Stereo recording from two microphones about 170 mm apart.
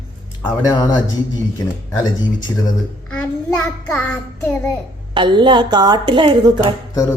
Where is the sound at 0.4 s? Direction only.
20° left (ahead or behind).